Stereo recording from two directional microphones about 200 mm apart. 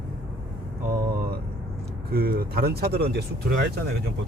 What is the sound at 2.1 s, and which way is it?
Speech, 50° right (ahead or behind).